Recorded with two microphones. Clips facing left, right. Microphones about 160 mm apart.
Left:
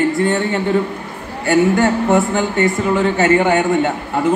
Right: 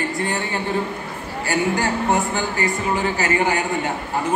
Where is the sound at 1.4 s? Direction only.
65° left (ahead or behind).